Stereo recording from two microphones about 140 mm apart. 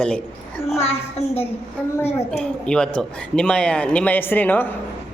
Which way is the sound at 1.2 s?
50° left (ahead or behind).